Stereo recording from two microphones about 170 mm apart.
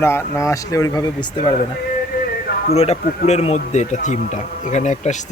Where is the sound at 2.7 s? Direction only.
35° left (ahead or behind).